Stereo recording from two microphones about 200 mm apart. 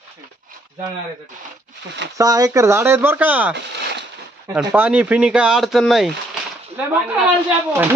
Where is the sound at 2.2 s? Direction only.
15° right (ahead or behind).